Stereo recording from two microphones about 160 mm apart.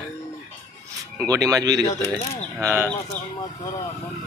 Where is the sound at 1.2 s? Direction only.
20° right (ahead or behind).